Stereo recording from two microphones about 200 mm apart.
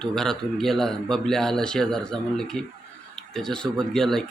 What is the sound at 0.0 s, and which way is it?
Speech, 5° left (ahead or behind).